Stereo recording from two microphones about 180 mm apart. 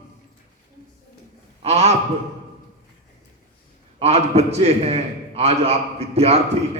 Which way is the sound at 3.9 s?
35° right (ahead or behind).